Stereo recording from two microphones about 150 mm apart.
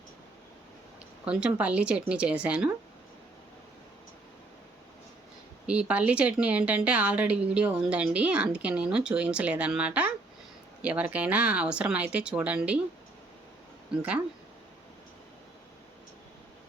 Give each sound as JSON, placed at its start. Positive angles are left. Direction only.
{"t": 1.2, "sound": "a woman's voice", "side_deg": -5}
{"t": 5.6, "sound": "a woman's voice", "side_deg": -10}
{"t": 13.9, "sound": "a woman's voice", "side_deg": -10}